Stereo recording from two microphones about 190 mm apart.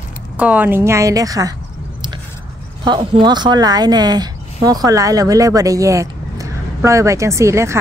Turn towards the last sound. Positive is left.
turn(degrees=-15)  # may be behind; listen again after turning